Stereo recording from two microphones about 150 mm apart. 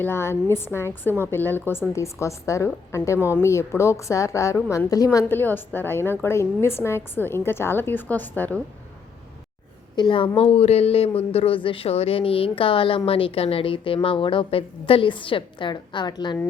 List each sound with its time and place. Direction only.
0.0 s a woman's voice: 15° left (ahead or behind)
9.9 s a woman's voice: 30° left (ahead or behind)